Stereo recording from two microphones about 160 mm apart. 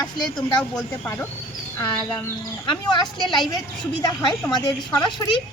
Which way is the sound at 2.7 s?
25° left (ahead or behind).